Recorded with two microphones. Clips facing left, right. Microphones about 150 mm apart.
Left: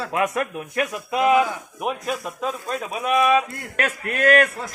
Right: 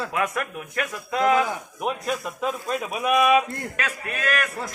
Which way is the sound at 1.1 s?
15° left (ahead or behind).